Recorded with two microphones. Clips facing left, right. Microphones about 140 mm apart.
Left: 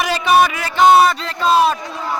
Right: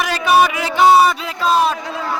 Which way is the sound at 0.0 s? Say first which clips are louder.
Even; centre (ahead or behind).